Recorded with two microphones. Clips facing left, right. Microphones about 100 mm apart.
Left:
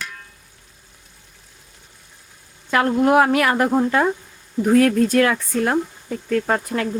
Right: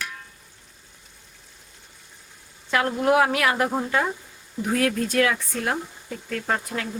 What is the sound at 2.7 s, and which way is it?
A woman's voice, 50° left (ahead or behind).